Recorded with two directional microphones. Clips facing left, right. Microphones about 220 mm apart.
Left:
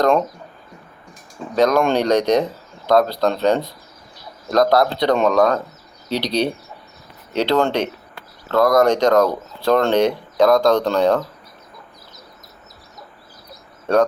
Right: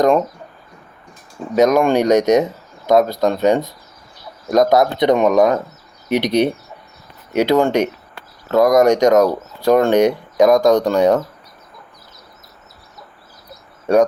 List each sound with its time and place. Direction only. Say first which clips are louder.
1.5 s speech: right 3 dB; 10° right (ahead or behind)